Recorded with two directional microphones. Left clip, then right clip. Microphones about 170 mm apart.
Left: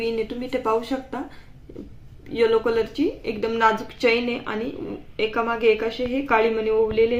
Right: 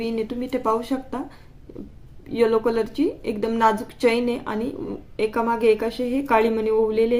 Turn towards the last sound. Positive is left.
turn(degrees=-50)  # may be behind; listen again after turning